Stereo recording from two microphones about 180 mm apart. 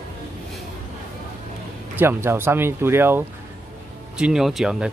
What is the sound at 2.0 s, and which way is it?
Speech, 15° right (ahead or behind).